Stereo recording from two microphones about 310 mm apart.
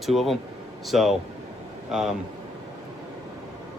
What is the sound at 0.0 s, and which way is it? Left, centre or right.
Speech, centre.